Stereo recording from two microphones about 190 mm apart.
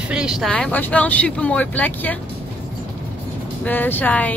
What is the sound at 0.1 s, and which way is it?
Speech, 5° right (ahead or behind).